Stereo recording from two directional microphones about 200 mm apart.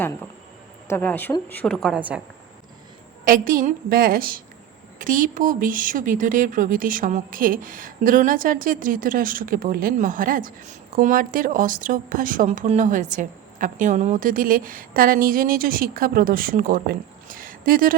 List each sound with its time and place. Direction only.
0.9 s a woman's voice: 10° left (ahead or behind); by 2.2 s 5° right (ahead or behind)
3.2 s a woman's voice: 45° right (ahead or behind)